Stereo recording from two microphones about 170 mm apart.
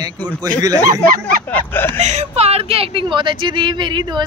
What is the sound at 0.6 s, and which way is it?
Speech, 20° right (ahead or behind).